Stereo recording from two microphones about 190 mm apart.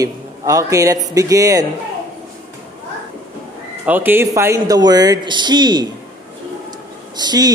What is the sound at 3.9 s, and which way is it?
Speech, 10° right (ahead or behind).